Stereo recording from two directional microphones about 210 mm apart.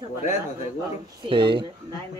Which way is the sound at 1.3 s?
25° right (ahead or behind).